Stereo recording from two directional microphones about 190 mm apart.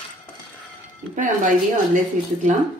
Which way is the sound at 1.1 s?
45° right (ahead or behind).